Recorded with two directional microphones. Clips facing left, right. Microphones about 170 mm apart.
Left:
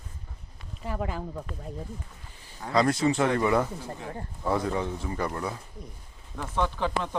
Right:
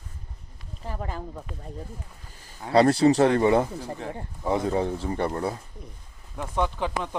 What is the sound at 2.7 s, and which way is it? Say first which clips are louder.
Speech: right 6 dB; 35° right (ahead or behind).